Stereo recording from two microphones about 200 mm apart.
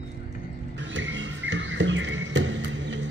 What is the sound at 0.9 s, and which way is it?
Music, 65° right (ahead or behind).